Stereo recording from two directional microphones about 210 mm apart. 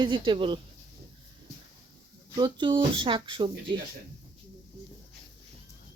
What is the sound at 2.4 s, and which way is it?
Speech, 20° right (ahead or behind).